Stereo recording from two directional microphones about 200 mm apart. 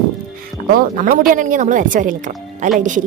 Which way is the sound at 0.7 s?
45° right (ahead or behind).